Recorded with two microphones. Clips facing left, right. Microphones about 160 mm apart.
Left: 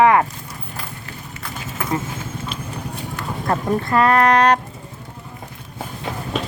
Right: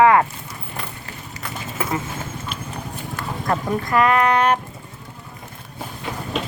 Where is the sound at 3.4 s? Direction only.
30° left (ahead or behind).